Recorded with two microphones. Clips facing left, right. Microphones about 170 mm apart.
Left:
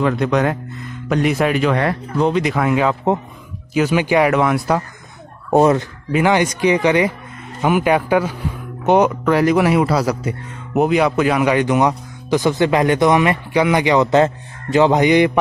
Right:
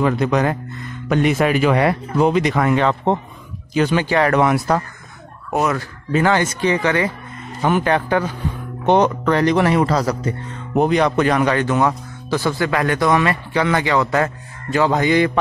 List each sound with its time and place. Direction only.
0.0 s speech: centre (ahead or behind)
2.4 s speech: 5° left (ahead or behind)
4.4 s speech: centre (ahead or behind)
5.5 s speech: 30° left (ahead or behind)
6.1 s speech: 15° left (ahead or behind)